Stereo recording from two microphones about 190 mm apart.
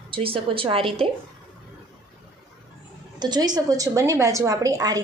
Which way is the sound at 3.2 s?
20° right (ahead or behind).